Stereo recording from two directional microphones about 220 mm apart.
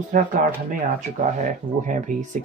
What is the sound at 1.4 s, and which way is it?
Speech, 35° right (ahead or behind).